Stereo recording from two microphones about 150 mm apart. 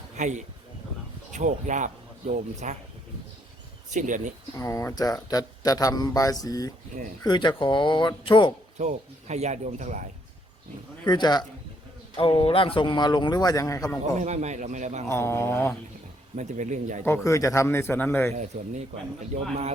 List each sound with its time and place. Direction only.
0.2 s a man's voice: 55° right (ahead or behind)
3.8 s speech: 55° right (ahead or behind)
4.5 s speech: 20° left (ahead or behind)
6.9 s speech: 50° right (ahead or behind)
7.3 s speech: 30° left (ahead or behind)
8.8 s speech: 50° right (ahead or behind)
11.1 s speech: 30° left (ahead or behind)
14.2 s speech: 50° right (ahead or behind)
15.1 s a man's voice: 15° left (ahead or behind)
16.3 s speech: 55° right (ahead or behind)
17.0 s a man's voice: 20° left (ahead or behind)
19.3 s speech: 75° right (ahead or behind)